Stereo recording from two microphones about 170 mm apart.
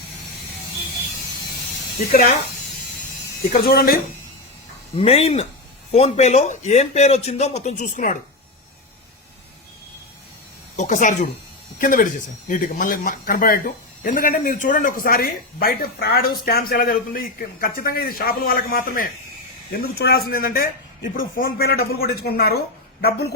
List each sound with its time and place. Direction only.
3.5 s a man's voice: 65° left (ahead or behind)
4.9 s a man's voice: 35° left (ahead or behind)
10.8 s a man's voice: 50° left (ahead or behind); by 23.3 s 70° left (ahead or behind)